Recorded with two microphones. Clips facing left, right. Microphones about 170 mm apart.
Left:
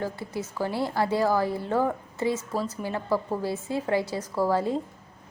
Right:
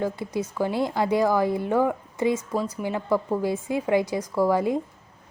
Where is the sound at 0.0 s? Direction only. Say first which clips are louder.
Right 4 dB; 15° right (ahead or behind).